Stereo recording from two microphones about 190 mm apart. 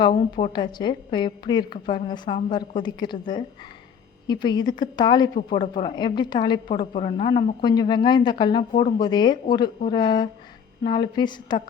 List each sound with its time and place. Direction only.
0.3 s a woman's voice: 25° left (ahead or behind)
6.9 s a woman's voice: 35° left (ahead or behind)